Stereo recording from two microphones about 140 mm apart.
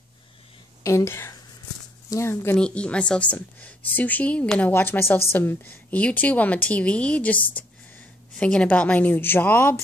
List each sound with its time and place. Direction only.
0.8 s a woman's voice: 20° left (ahead or behind)
2.5 s a woman's voice: 5° left (ahead or behind)